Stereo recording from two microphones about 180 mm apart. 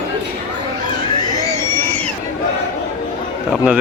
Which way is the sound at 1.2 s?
20° left (ahead or behind).